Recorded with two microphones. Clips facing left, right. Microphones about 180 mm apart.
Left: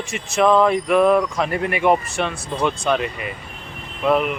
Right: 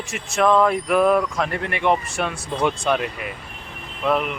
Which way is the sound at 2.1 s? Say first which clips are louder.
Left 1 dB; 10° right (ahead or behind).